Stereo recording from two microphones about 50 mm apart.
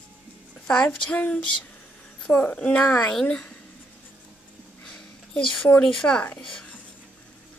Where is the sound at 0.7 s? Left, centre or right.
Left.